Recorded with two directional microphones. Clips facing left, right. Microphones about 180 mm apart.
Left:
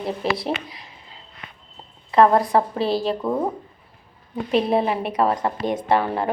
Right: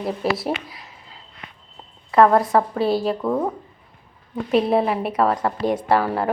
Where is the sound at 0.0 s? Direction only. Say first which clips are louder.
Right 1 dB; 5° right (ahead or behind).